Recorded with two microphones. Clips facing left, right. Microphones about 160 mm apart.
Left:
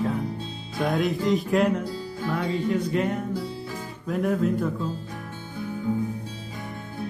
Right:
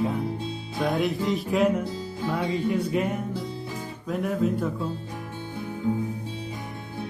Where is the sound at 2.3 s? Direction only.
10° right (ahead or behind).